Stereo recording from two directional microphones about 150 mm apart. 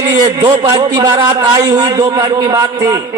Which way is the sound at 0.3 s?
30° right (ahead or behind).